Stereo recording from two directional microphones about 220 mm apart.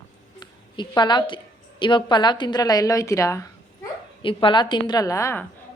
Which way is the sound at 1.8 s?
20° left (ahead or behind).